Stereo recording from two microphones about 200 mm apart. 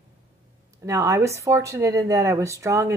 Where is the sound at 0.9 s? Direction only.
15° right (ahead or behind).